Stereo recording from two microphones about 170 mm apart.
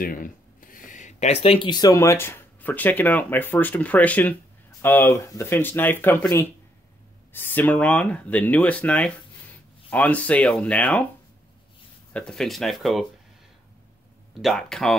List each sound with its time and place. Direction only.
0.0 s speech: 55° left (ahead or behind); by 11.1 s 5° left (ahead or behind)
12.1 s speech: 5° left (ahead or behind)
14.4 s speech: centre (ahead or behind)